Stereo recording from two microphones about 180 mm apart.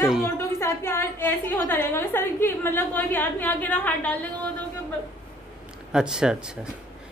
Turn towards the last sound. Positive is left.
turn(degrees=-5)  # may be behind; listen again after turning